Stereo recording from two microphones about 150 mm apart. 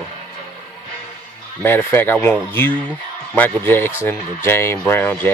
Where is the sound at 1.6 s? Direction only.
15° left (ahead or behind).